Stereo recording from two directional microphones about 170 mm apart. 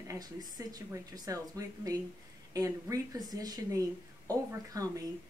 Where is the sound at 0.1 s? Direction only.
20° right (ahead or behind).